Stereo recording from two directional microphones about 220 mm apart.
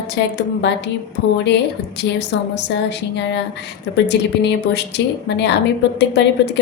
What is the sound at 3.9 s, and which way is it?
A woman's voice, 50° left (ahead or behind).